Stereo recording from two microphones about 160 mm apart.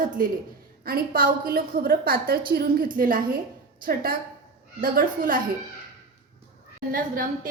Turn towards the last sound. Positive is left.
turn(degrees=-60)  # may be behind; listen again after turning